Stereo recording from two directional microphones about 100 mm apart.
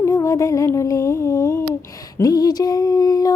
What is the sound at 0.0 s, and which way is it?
Speech, 30° left (ahead or behind).